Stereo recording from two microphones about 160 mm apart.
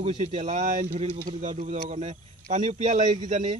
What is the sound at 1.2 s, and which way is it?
Speech, 55° right (ahead or behind).